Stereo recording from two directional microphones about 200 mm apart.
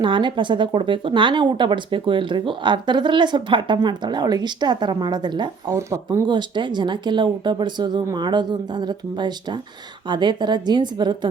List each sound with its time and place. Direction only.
0.0 s speech: 25° right (ahead or behind)